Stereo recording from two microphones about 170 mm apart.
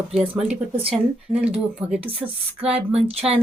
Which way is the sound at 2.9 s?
35° right (ahead or behind).